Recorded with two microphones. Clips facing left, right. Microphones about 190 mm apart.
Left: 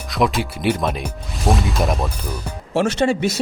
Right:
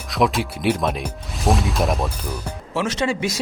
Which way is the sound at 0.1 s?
Centre (ahead or behind).